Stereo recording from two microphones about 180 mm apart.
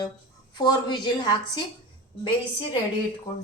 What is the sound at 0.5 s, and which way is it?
A woman's voice, 25° left (ahead or behind).